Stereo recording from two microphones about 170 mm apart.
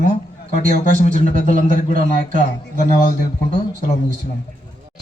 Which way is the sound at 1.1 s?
45° left (ahead or behind).